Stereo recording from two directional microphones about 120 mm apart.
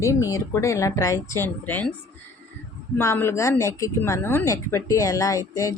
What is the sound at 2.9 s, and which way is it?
A woman's voice, 20° left (ahead or behind).